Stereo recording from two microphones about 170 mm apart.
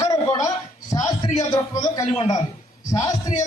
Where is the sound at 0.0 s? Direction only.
20° left (ahead or behind).